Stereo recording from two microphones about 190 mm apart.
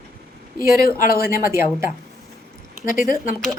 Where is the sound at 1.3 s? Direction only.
15° right (ahead or behind).